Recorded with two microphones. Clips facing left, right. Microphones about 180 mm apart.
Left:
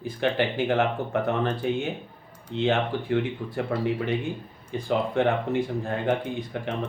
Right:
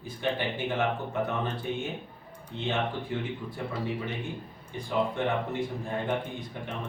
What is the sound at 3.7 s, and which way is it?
Speech, 90° left.